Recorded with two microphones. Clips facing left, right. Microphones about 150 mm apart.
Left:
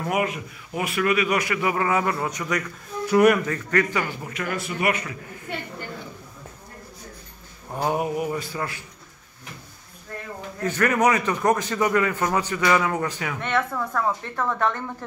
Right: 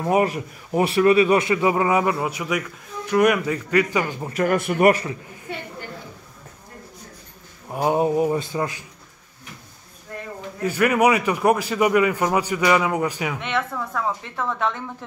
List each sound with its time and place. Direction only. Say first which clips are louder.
0.0 s a man's voice: right 5 dB; 35° right (ahead or behind); by 2.6 s 10° right (ahead or behind)
3.1 s speech: left 1 dB; 5° left (ahead or behind)
3.4 s a man's voice: right 3 dB; 15° right (ahead or behind)
4.2 s speech: right 8 dB; 40° right (ahead or behind)
7.7 s a man's voice: right 4 dB; 15° right (ahead or behind)
8.0 s a man's voice: right 6 dB; 30° right (ahead or behind)
10.6 s a man's voice: right 3 dB; 10° right (ahead or behind)
13.4 s a woman's voice: left 1 dB; centre (ahead or behind)